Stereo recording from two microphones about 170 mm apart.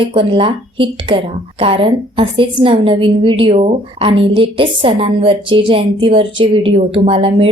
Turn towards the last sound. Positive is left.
turn(degrees=-35)  # may be behind; listen again after turning